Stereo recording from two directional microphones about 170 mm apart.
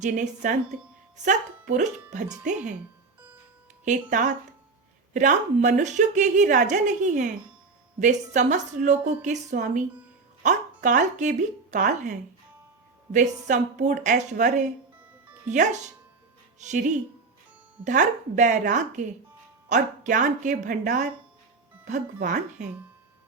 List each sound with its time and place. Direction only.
0.0 s a woman's voice: 50° right (ahead or behind)
3.8 s a woman's voice: 45° right (ahead or behind)
22.2 s a woman's voice: 45° right (ahead or behind)